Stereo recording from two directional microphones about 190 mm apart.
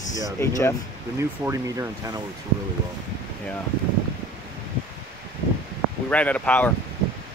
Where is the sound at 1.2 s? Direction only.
15° right (ahead or behind).